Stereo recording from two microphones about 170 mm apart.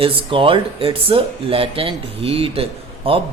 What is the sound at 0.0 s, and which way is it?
Speech, 30° right (ahead or behind).